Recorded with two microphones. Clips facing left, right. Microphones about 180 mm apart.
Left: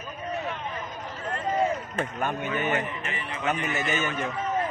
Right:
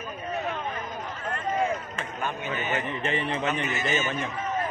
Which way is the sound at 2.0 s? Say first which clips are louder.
Left 4 dB; 55° left (ahead or behind).